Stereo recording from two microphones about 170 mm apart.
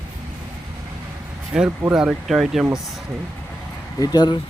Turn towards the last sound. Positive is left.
turn(degrees=25)  # may be behind; listen again after turning